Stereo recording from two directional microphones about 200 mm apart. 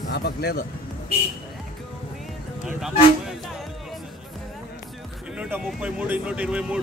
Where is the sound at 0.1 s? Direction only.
55° left (ahead or behind).